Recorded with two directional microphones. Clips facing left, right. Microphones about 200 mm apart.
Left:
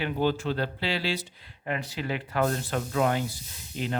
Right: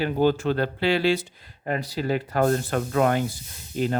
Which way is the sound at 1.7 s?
40° right (ahead or behind).